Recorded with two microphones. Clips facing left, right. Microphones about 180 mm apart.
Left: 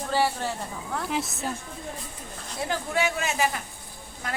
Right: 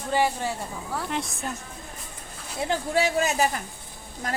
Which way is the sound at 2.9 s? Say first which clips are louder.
Right 4 dB; 35° right (ahead or behind).